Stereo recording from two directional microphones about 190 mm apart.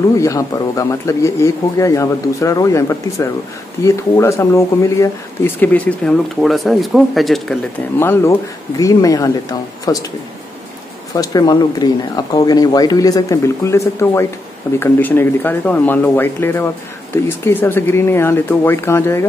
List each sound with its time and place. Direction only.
0.1 s speech: 15° left (ahead or behind); by 7.5 s centre (ahead or behind)
8.0 s speech: 10° left (ahead or behind)
11.1 s speech: 20° left (ahead or behind)